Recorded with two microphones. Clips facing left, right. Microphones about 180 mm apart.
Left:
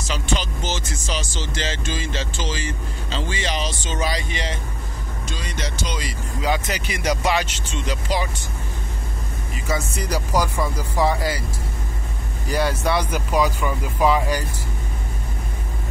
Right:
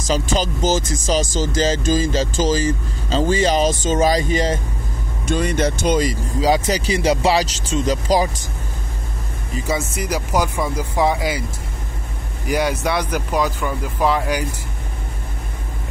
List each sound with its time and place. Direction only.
0.0 s speech: 40° right (ahead or behind)
5.2 s speech: 55° right (ahead or behind)
9.7 s a man's voice: 10° right (ahead or behind)
12.4 s a man's voice: 15° right (ahead or behind)
13.1 s speech: 5° left (ahead or behind)